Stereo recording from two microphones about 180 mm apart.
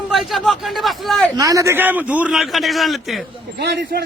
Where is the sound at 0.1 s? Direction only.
Centre (ahead or behind).